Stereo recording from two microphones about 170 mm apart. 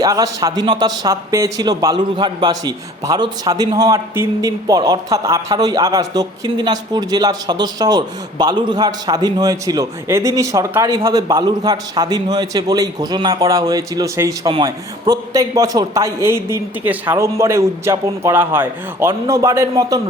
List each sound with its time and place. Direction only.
0.0 s speech: 20° right (ahead or behind)